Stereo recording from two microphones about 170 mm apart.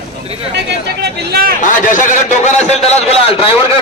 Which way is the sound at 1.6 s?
50° left (ahead or behind).